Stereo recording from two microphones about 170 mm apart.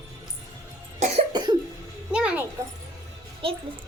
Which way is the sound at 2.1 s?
5° right (ahead or behind).